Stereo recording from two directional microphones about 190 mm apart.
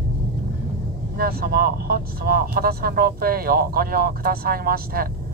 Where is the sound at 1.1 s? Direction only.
50° right (ahead or behind).